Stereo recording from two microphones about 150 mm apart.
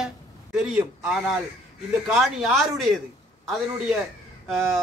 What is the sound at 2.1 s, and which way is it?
Speech, centre (ahead or behind).